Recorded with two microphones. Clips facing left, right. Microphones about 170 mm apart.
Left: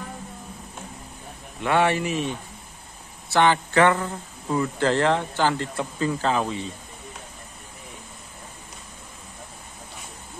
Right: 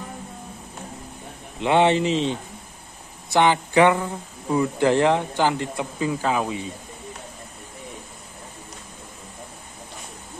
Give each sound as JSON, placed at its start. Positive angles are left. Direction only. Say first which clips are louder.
{"t": 1.6, "sound": "a man's voice", "louder": "right 3 dB", "side_deg": -20}